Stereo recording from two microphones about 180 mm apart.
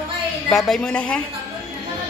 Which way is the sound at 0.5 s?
Centre (ahead or behind).